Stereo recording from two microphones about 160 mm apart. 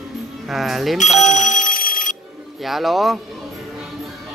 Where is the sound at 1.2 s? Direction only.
50° left (ahead or behind).